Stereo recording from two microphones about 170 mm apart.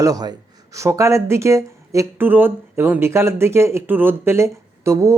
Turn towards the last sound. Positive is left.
turn(degrees=-15)  # may be behind; listen again after turning